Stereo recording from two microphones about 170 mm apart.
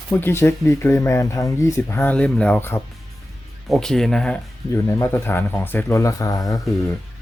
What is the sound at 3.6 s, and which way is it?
Speech, centre (ahead or behind).